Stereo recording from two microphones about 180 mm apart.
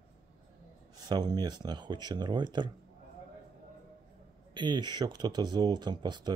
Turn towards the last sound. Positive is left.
turn(degrees=-25)  # may be behind; listen again after turning